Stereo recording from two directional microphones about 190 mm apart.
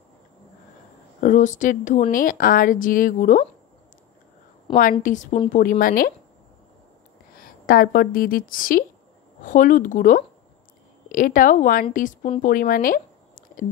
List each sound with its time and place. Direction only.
1.2 s speech: 40° left (ahead or behind)
5.0 s a woman's voice: 40° left (ahead or behind)
7.3 s a woman's voice: 50° left (ahead or behind)